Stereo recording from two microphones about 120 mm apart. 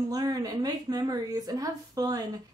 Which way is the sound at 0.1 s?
30° right (ahead or behind).